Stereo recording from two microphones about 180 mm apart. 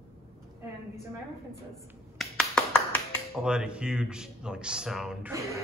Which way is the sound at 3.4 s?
5° right (ahead or behind).